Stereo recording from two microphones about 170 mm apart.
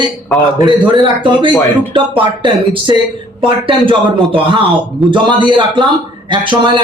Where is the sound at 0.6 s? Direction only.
25° right (ahead or behind).